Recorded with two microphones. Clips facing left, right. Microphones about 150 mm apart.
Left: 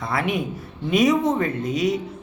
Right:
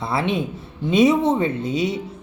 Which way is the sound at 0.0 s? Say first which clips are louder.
Right 2 dB; 30° right (ahead or behind).